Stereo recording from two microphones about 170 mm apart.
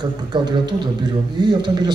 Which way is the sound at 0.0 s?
25° right (ahead or behind).